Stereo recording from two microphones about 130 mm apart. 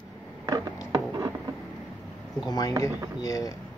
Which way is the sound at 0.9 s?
35° right (ahead or behind).